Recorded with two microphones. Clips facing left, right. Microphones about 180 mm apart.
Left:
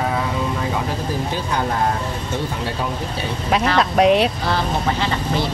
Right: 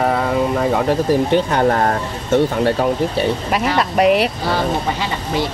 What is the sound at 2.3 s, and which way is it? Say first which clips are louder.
Speech: right 13 dB; 65° right (ahead or behind).